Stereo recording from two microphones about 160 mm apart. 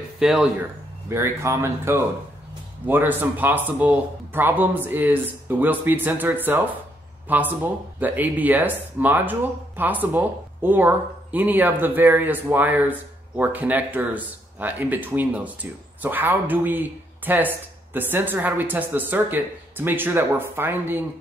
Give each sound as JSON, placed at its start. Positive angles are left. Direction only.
{"t": 0.2, "sound": "speech", "side_deg": -5}
{"t": 1.0, "sound": "speech", "side_deg": -15}